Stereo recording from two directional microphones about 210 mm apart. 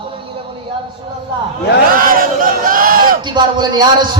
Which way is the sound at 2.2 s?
40° right (ahead or behind).